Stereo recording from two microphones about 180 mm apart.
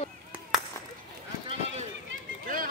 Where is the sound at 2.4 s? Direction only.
50° right (ahead or behind).